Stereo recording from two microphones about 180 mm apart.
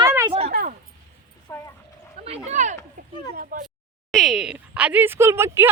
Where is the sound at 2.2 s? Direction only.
35° right (ahead or behind).